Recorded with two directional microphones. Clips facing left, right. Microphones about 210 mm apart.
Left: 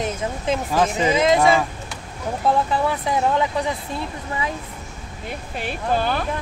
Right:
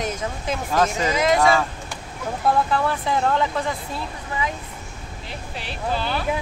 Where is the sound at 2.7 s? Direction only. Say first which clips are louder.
Left 1 dB; 15° left (ahead or behind).